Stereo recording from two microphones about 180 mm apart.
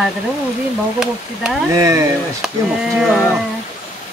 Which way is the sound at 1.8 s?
15° right (ahead or behind).